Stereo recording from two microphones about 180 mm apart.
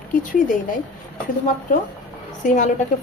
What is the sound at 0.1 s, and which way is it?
Speech, 45° left (ahead or behind).